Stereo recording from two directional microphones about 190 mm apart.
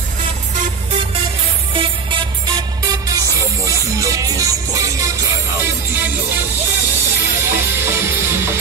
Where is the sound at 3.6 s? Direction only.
15° right (ahead or behind).